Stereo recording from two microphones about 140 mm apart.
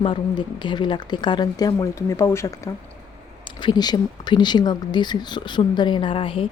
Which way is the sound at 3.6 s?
30° left (ahead or behind).